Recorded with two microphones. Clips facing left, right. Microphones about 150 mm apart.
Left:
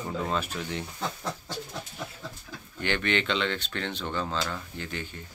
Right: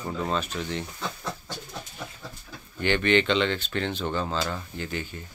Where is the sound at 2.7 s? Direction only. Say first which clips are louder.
Right 6 dB; centre (ahead or behind).